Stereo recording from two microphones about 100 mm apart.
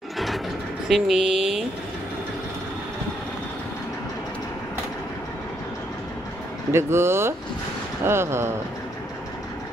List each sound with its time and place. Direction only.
0.8 s speech: centre (ahead or behind)
6.7 s speech: 25° right (ahead or behind)